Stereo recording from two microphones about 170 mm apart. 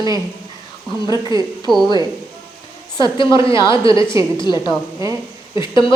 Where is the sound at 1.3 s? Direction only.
25° left (ahead or behind).